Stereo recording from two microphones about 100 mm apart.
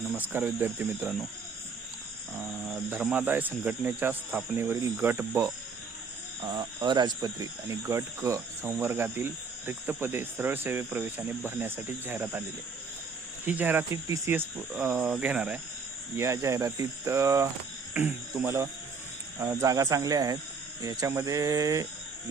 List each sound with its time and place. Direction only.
0.1 s speech: 15° right (ahead or behind)
2.3 s speech: 15° right (ahead or behind)
6.4 s speech: 50° right (ahead or behind); by 13.8 s 20° right (ahead or behind)
13.9 s speech: 30° right (ahead or behind)
14.3 s speech: 20° right (ahead or behind)
16.1 s speech: 30° right (ahead or behind)